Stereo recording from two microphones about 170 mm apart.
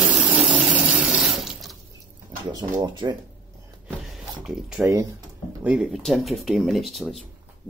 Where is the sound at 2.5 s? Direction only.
25° right (ahead or behind).